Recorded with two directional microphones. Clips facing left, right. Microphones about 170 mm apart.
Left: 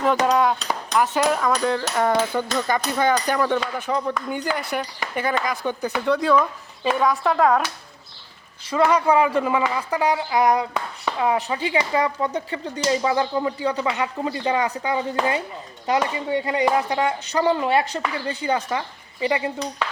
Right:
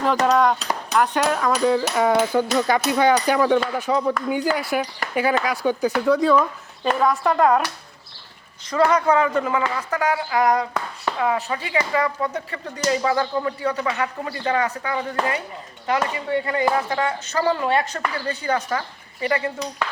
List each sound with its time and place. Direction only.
0.0 s cutlery: centre (ahead or behind)
5.1 s a woman's voice: 10° right (ahead or behind)
8.7 s speech: 10° left (ahead or behind)